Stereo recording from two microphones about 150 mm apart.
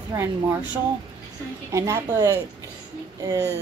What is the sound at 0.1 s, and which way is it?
Speech, 20° right (ahead or behind).